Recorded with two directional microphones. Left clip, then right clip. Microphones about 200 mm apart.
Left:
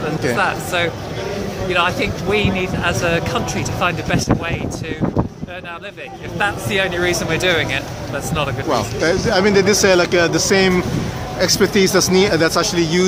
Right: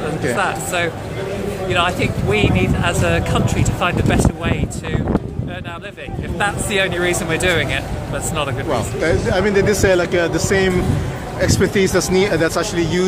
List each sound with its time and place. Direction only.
0.4 s speech: 5° left (ahead or behind)
6.3 s speech: centre (ahead or behind)
8.6 s speech: 15° left (ahead or behind)